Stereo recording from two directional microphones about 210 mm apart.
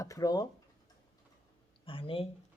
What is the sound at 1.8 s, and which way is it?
Speech, 25° left (ahead or behind).